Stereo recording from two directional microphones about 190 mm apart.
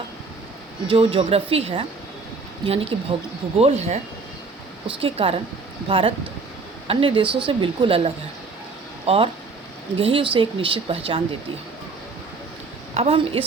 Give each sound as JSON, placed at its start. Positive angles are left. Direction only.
{"t": 0.9, "sound": "speech", "side_deg": -30}
{"t": 12.9, "sound": "speech", "side_deg": -30}